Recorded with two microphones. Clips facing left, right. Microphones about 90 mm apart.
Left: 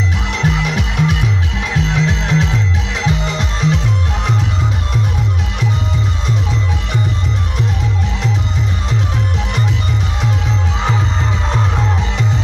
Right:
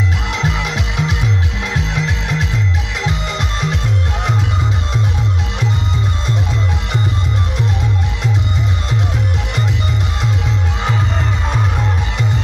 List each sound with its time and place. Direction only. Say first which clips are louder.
0.4 s music: left 4 dB; 15° right (ahead or behind)